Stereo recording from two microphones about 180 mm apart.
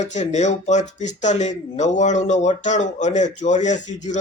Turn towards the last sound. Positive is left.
turn(degrees=40)  # may be behind; listen again after turning